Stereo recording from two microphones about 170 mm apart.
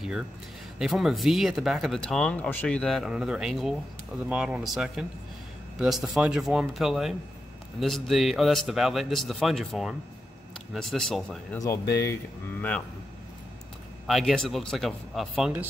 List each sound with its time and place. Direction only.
0.7 s speech: centre (ahead or behind)
11.5 s speech: 20° left (ahead or behind)
14.0 s speech: centre (ahead or behind)